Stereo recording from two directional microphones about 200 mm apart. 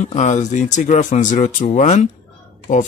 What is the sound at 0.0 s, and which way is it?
Speech, 35° left (ahead or behind).